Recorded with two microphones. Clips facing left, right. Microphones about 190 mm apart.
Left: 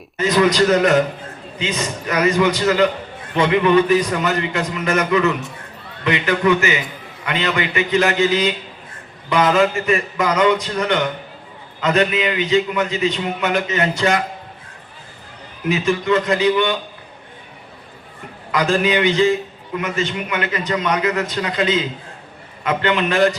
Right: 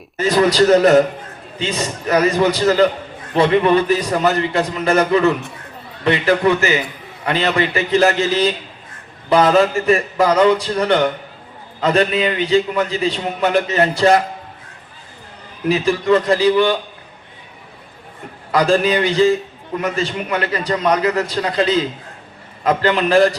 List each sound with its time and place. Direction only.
0.2 s a man's voice: 30° right (ahead or behind)
15.7 s a man's voice: 35° right (ahead or behind)
18.5 s a man's voice: 35° right (ahead or behind)